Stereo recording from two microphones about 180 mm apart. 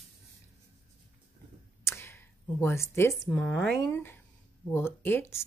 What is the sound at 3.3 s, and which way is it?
Speech, 10° left (ahead or behind).